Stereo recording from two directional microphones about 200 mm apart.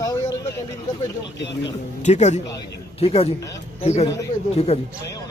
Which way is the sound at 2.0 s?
35° left (ahead or behind).